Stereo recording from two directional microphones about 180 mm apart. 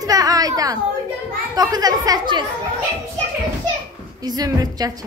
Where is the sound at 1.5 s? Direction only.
20° right (ahead or behind).